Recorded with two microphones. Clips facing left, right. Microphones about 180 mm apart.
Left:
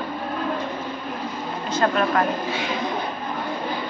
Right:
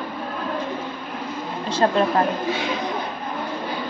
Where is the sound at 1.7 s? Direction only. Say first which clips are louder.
Right 2 dB; 25° right (ahead or behind).